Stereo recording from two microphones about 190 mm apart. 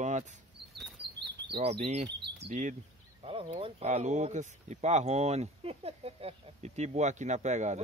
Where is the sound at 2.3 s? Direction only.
35° right (ahead or behind).